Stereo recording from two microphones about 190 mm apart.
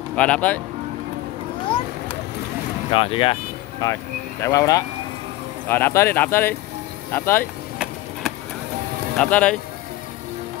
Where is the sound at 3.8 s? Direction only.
20° left (ahead or behind).